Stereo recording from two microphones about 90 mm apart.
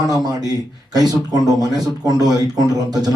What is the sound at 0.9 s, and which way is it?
A man's voice, 45° right (ahead or behind).